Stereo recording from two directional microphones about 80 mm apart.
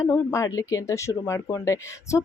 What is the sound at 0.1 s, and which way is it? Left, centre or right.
Speech, left.